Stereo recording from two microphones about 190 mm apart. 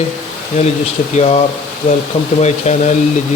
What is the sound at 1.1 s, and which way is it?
Speech, 35° left (ahead or behind).